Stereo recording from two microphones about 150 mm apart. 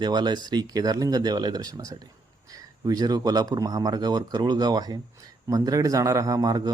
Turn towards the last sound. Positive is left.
turn(degrees=-25)  # may be behind; listen again after turning